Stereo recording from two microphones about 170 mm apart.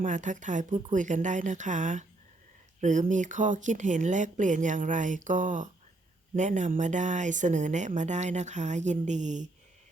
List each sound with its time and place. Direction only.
0.0 s speech: 45° right (ahead or behind)